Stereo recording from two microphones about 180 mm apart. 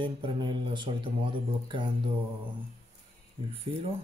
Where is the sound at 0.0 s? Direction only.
25° right (ahead or behind).